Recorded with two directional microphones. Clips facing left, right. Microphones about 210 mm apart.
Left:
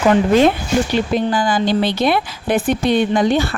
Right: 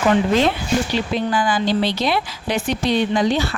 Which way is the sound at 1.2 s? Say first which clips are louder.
Left 3 dB; 40° left (ahead or behind).